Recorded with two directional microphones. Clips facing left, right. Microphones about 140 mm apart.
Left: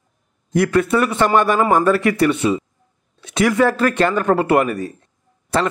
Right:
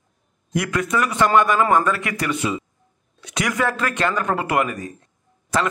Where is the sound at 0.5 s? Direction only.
30° left (ahead or behind).